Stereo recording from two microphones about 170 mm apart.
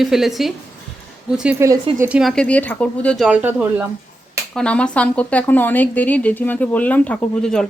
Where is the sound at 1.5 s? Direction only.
15° right (ahead or behind).